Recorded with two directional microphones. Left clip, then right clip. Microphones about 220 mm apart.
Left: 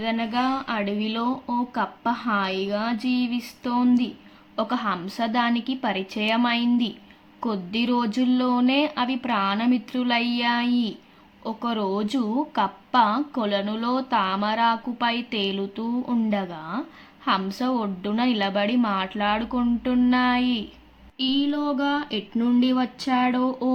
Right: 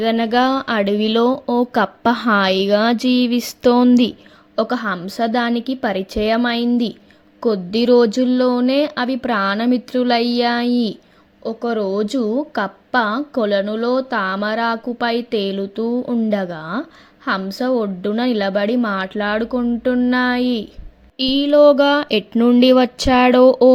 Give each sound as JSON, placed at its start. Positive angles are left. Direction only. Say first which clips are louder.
{"t": 0.0, "sound": "speech", "louder": "right 9 dB", "side_deg": -35}
{"t": 4.5, "sound": "speech", "louder": "right 6 dB", "side_deg": -25}
{"t": 21.2, "sound": "speech", "louder": "right 12 dB", "side_deg": -35}